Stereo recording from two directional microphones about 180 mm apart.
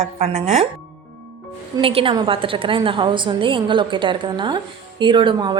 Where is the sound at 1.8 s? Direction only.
30° right (ahead or behind).